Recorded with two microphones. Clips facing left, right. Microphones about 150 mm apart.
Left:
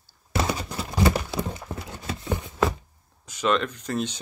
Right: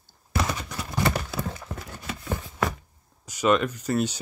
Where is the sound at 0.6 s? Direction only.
30° left (ahead or behind).